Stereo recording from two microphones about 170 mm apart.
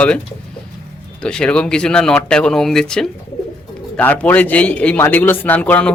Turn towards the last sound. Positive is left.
turn(degrees=10)  # may be behind; listen again after turning